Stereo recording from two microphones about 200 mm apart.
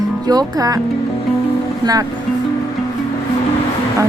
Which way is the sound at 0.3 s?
20° right (ahead or behind).